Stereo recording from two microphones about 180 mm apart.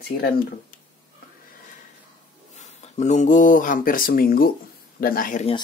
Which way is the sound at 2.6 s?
40° left (ahead or behind).